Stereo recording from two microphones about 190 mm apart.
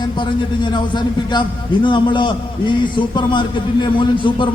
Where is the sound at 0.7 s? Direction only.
25° left (ahead or behind).